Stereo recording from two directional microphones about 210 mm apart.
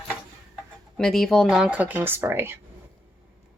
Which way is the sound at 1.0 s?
Centre (ahead or behind).